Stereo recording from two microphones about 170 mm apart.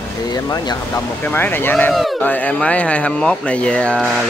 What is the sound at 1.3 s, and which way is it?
Speech, 10° left (ahead or behind).